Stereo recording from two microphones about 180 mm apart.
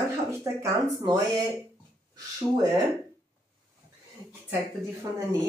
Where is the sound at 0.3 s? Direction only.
15° right (ahead or behind).